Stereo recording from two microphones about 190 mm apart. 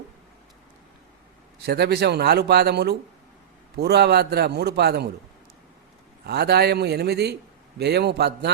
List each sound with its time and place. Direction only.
1.6 s a man's voice: 60° right (ahead or behind)
6.2 s a man's voice: 60° right (ahead or behind)